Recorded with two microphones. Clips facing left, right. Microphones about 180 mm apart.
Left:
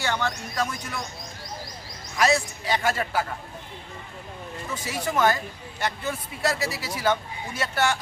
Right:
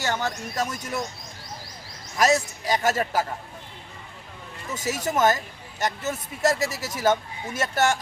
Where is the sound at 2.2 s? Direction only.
40° right (ahead or behind).